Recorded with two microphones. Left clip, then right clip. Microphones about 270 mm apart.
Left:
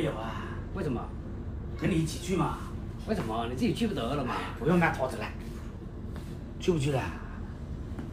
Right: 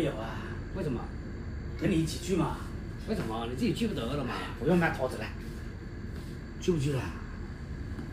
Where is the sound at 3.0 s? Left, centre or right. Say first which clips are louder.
Left 3 dB; centre.